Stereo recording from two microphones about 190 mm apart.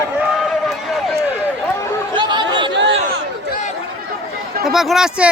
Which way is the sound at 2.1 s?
25° right (ahead or behind).